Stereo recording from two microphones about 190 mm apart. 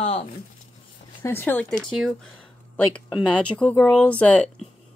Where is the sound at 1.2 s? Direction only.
10° left (ahead or behind).